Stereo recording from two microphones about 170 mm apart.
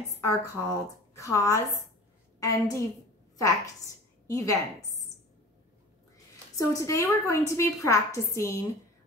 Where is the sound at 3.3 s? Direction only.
20° left (ahead or behind).